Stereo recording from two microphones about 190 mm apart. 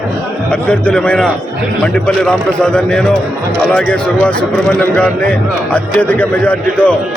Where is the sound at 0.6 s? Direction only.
5° left (ahead or behind).